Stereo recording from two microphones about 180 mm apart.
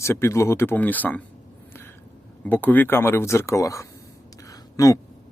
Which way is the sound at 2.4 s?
10° left (ahead or behind).